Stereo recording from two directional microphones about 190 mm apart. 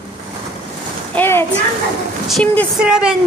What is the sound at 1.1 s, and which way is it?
Speech, 10° left (ahead or behind).